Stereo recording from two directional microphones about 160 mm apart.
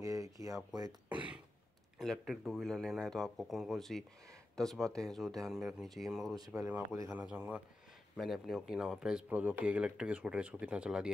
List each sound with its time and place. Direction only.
0.0 s speech: 20° right (ahead or behind)
2.0 s speech: centre (ahead or behind)
6.3 s speech: 20° right (ahead or behind); by 11.1 s 5° right (ahead or behind)